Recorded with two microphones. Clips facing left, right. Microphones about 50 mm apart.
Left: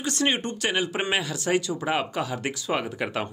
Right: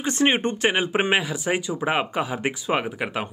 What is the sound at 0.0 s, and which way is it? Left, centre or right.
Speech, right.